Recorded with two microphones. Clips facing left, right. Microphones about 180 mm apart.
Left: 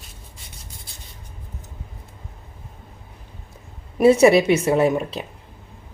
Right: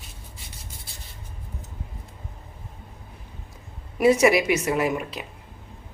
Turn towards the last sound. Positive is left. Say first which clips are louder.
# left 6 dB
turn(degrees=30)  # may be behind; listen again after turning